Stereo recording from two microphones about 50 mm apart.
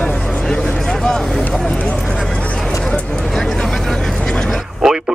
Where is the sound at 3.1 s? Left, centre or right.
Centre.